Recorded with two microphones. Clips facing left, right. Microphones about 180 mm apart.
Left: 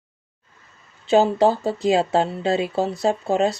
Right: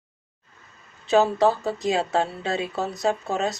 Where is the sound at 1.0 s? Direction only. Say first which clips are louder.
Left 3 dB; 30° left (ahead or behind).